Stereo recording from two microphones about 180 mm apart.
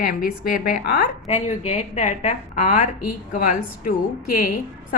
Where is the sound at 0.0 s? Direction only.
50° left (ahead or behind).